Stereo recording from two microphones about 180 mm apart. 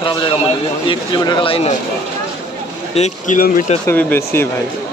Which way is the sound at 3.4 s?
50° left (ahead or behind).